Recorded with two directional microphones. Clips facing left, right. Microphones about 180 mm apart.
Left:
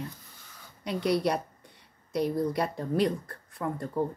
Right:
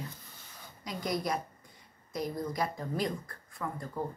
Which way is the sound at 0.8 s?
70° left (ahead or behind).